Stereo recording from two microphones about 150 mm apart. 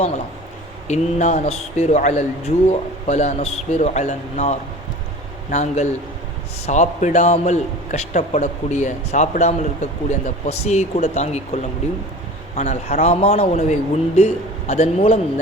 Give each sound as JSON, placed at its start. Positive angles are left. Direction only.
{"t": 0.9, "sound": "a man's voice", "side_deg": 50}